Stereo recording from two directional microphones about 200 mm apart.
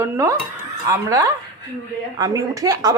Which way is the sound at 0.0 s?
15° right (ahead or behind).